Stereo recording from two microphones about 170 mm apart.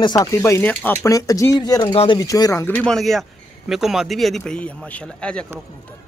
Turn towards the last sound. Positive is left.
turn(degrees=5)  # may be behind; listen again after turning